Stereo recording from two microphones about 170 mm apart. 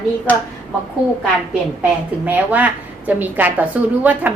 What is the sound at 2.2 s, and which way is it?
A woman's voice, 10° right (ahead or behind).